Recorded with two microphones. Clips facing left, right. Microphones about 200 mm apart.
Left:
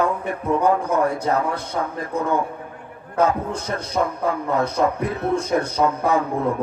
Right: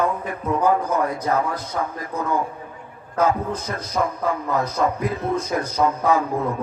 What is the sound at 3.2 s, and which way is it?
Speech, 30° left (ahead or behind).